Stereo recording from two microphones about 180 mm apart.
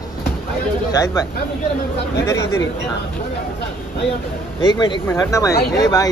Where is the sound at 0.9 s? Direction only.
20° left (ahead or behind).